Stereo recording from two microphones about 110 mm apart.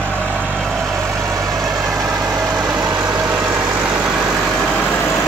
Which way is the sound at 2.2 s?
20° right (ahead or behind).